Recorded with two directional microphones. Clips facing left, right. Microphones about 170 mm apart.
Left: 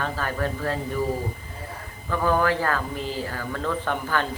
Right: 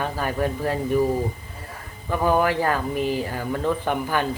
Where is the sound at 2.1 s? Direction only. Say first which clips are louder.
Right 2 dB; 15° right (ahead or behind).